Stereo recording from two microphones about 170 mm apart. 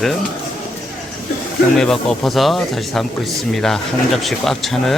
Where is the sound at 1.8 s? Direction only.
5° left (ahead or behind).